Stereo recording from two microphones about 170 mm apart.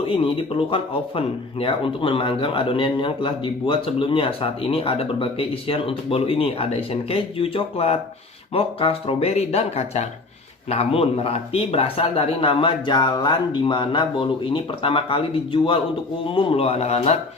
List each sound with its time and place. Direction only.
0.0 s speech: 30° left (ahead or behind)